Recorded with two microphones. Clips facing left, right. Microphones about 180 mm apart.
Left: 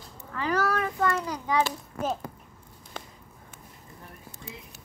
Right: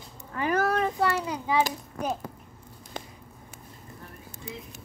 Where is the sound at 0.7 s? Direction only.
25° right (ahead or behind).